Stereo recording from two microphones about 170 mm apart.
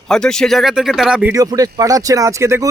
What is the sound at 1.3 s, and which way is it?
Speech, 20° right (ahead or behind).